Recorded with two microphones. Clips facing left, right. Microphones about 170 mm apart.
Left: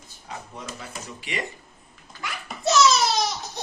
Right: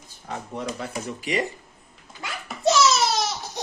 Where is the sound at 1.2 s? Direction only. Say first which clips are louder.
Right 6 dB; 40° right (ahead or behind).